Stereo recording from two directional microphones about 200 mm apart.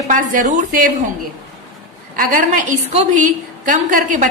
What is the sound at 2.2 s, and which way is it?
A woman's voice, 40° right (ahead or behind).